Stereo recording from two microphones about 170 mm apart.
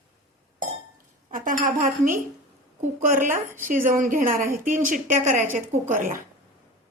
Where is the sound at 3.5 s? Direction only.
50° right (ahead or behind).